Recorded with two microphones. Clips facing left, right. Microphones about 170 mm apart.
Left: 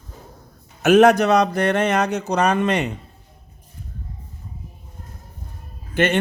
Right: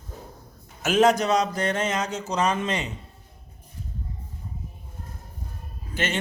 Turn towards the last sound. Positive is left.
turn(degrees=60)  # may be behind; listen again after turning